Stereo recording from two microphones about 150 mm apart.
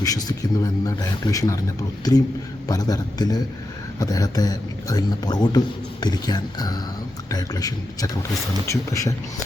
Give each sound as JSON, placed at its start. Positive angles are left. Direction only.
{"t": 0.0, "sound": "a man's voice", "side_deg": 25}